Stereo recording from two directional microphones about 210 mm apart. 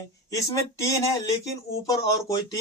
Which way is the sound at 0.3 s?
15° left (ahead or behind).